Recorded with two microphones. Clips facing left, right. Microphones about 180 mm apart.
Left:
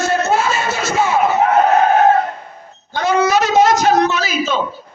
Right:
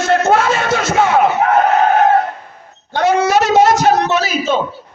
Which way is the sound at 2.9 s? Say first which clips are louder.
Right 3 dB; 70° right (ahead or behind).